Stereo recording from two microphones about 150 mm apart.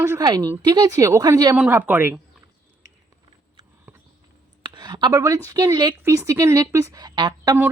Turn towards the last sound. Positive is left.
turn(degrees=-25)  # may be behind; listen again after turning